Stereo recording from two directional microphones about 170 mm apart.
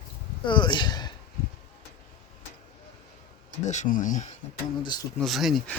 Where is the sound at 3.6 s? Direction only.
50° left (ahead or behind).